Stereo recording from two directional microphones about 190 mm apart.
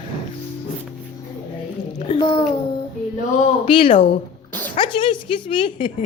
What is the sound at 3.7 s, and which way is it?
Speech, 30° left (ahead or behind).